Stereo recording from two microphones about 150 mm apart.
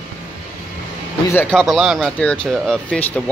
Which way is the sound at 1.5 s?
Centre (ahead or behind).